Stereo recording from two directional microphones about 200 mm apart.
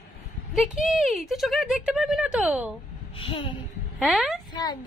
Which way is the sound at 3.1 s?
25° left (ahead or behind).